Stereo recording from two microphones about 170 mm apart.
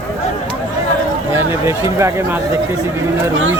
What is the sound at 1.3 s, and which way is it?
A man's voice, 15° right (ahead or behind).